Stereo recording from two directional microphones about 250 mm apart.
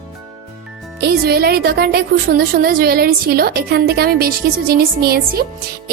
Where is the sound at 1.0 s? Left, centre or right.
Right.